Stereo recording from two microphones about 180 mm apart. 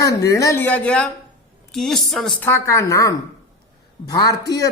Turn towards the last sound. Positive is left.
turn(degrees=20)  # may be behind; listen again after turning